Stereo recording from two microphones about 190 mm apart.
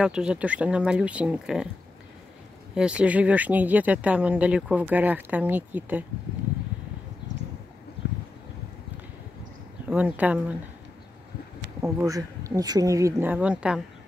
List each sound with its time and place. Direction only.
0.0 s speech: 5° right (ahead or behind)
2.7 s speech: 5° right (ahead or behind)
9.8 s speech: 10° right (ahead or behind)
11.8 s speech: 15° right (ahead or behind)